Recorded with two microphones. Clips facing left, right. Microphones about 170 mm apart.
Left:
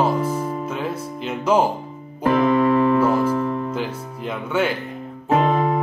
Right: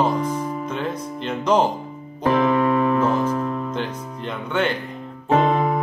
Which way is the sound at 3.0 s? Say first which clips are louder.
Left 2 dB; 10° left (ahead or behind).